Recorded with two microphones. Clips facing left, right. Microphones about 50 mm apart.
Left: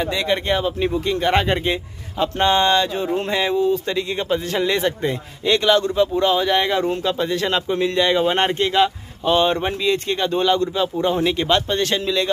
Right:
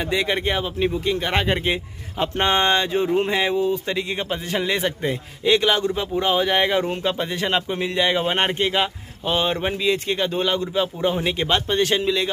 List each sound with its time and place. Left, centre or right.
0.0 s a man's voice: centre
1.7 s a man's voice: centre